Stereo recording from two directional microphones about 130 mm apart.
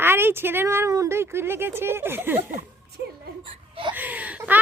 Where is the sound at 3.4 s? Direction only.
40° right (ahead or behind).